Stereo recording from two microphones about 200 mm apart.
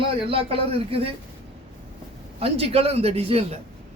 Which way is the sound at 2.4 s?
30° right (ahead or behind).